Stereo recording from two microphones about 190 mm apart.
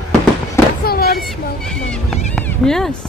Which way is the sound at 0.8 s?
55° left (ahead or behind).